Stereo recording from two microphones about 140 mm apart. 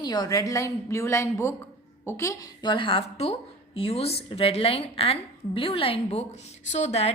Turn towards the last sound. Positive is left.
turn(degrees=50)  # may be behind; listen again after turning